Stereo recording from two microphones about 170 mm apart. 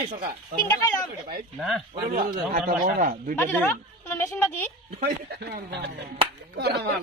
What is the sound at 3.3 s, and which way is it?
Speech, 10° left (ahead or behind).